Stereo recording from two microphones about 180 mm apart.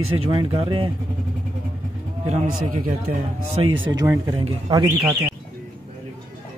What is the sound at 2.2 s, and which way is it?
A man's voice, 45° right (ahead or behind).